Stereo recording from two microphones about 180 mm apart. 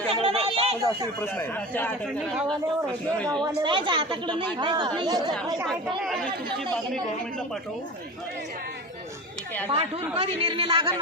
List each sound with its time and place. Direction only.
0.1 s a sound: 30° right (ahead or behind)
1.2 s a man's voice: 10° left (ahead or behind)
2.3 s speech: 5° right (ahead or behind)
3.4 s speech: 25° right (ahead or behind)
5.6 s speech: centre (ahead or behind)
9.6 s speech: 30° right (ahead or behind)